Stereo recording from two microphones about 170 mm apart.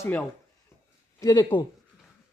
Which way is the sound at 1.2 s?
25° left (ahead or behind).